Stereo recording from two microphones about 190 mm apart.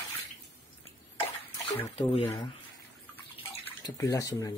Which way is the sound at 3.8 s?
20° left (ahead or behind).